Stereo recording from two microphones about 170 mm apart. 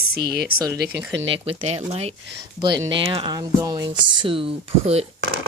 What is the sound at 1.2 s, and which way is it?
Speech, 35° right (ahead or behind).